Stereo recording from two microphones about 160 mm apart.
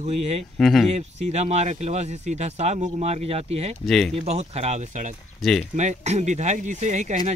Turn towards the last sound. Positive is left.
turn(degrees=-45)  # may be behind; listen again after turning